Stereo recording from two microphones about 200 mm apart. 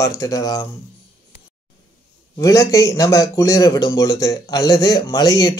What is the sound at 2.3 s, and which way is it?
Speech, 15° left (ahead or behind).